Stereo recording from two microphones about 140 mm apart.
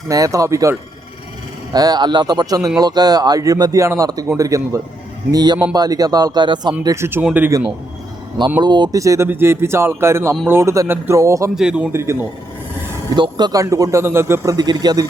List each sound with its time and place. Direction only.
0.1 s speech: 25° right (ahead or behind)
6.8 s speech: 20° right (ahead or behind)
8.6 s speech: 30° right (ahead or behind)
11.5 s a man's voice: 5° right (ahead or behind)
11.9 s speech: 20° right (ahead or behind)
13.1 s speech: 30° right (ahead or behind)